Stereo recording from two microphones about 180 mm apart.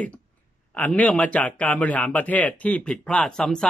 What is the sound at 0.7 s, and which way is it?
Speech, 5° left (ahead or behind).